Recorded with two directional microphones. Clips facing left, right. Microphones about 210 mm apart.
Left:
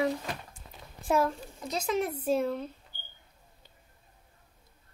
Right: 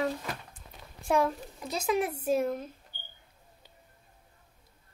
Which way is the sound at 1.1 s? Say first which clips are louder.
Even; centre (ahead or behind).